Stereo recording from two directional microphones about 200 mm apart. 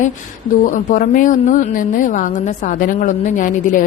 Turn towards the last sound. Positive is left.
turn(degrees=40)  # may be behind; listen again after turning